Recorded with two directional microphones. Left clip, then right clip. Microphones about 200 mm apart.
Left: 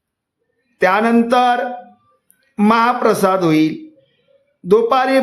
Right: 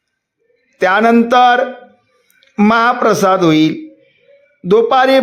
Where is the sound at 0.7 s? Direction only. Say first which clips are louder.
Right 3 dB; 20° right (ahead or behind).